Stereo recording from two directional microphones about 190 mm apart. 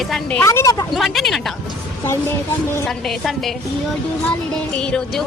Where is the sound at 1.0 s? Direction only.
Centre (ahead or behind).